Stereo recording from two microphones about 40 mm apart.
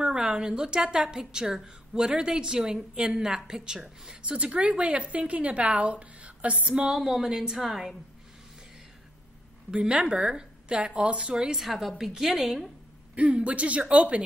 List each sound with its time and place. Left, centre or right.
0.0 s a woman's voice: centre
4.4 s a woman's voice: right
6.6 s speech: right
6.9 s a woman's voice: centre
9.7 s a woman's voice: right
11.5 s a woman's voice: centre
13.1 s a woman's voice: right